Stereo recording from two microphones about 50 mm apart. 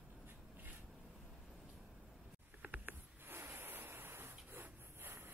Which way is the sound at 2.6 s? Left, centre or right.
Right.